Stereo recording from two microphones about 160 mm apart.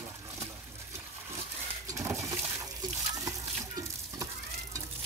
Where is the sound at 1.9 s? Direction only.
20° right (ahead or behind).